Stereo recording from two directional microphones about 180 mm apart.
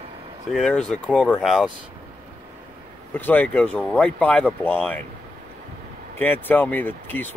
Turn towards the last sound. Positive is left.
turn(degrees=10)  # may be behind; listen again after turning